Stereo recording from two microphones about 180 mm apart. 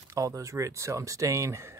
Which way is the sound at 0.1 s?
20° right (ahead or behind).